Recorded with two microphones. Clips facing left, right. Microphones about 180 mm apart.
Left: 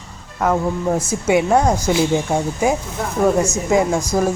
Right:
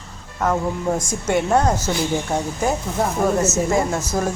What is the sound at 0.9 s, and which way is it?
Speech, 10° left (ahead or behind).